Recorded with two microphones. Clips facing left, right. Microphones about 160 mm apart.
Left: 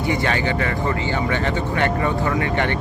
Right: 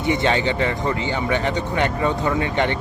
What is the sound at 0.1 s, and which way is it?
Speech, 20° right (ahead or behind).